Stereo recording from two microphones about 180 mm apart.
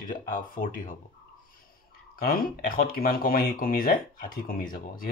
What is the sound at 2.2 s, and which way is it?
Speech, 50° left (ahead or behind).